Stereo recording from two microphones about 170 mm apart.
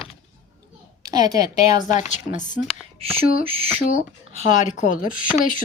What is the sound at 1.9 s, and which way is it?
Speech, 45° left (ahead or behind).